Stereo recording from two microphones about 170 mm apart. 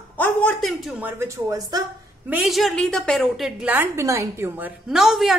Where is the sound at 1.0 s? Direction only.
15° right (ahead or behind).